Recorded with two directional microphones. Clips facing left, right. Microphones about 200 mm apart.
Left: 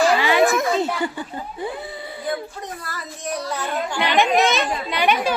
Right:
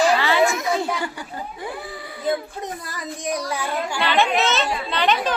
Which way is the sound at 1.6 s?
25° left (ahead or behind).